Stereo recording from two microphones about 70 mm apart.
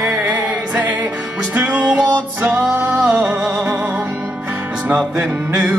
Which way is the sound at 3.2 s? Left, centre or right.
Centre.